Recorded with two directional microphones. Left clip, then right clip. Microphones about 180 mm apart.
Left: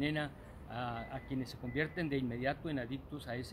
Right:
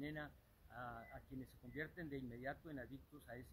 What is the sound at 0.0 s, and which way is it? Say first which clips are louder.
Speech: left 13 dB; 5° left (ahead or behind).